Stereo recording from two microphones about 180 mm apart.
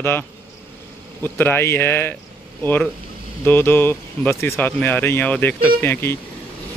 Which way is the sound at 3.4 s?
10° left (ahead or behind).